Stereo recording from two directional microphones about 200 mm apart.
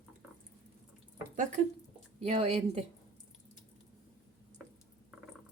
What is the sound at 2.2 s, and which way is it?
Speech, 30° right (ahead or behind).